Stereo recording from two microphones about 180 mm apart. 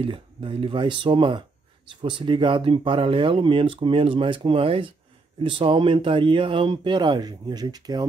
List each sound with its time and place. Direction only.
0.0 s speech: 30° right (ahead or behind)